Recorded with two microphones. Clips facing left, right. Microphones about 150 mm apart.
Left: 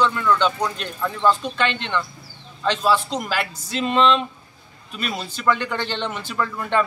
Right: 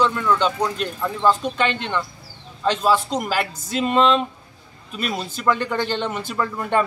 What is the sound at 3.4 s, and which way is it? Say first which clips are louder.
Speech: right 2 dB; 45° right (ahead or behind).